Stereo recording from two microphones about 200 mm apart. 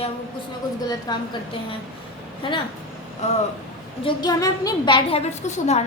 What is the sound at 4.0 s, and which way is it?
A woman's voice, 20° left (ahead or behind).